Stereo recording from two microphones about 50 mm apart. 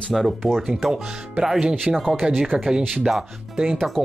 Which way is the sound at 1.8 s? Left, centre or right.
Centre.